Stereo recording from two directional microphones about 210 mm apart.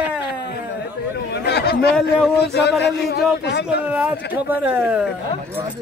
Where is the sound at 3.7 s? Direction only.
5° right (ahead or behind).